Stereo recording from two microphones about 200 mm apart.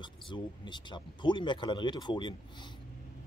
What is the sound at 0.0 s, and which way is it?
Speech, 25° left (ahead or behind).